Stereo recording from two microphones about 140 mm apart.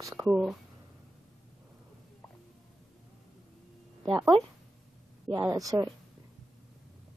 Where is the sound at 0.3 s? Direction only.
Centre (ahead or behind).